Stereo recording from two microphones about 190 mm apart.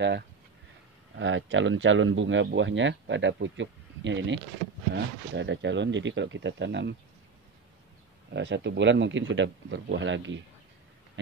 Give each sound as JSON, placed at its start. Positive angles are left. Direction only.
{"t": 1.1, "sound": "speech", "side_deg": -85}
{"t": 8.3, "sound": "speech", "side_deg": -70}